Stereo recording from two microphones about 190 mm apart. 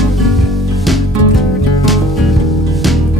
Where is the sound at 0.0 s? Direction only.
Centre (ahead or behind).